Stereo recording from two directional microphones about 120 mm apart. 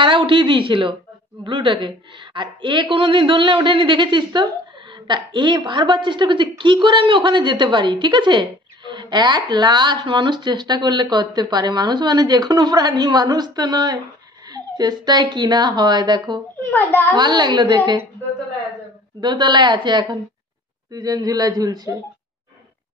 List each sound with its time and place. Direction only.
0.0 s a woman's voice: 45° right (ahead or behind)
16.6 s a child's voice: 15° left (ahead or behind)
17.1 s a woman's voice: 40° right (ahead or behind)
19.2 s a woman's voice: 40° right (ahead or behind)